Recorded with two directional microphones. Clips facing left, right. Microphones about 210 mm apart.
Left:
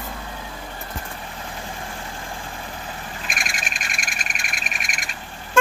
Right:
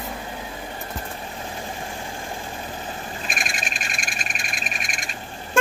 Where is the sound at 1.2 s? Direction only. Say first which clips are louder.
Right 2 dB; 25° right (ahead or behind).